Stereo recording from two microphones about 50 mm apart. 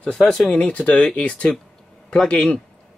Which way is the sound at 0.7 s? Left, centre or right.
Left.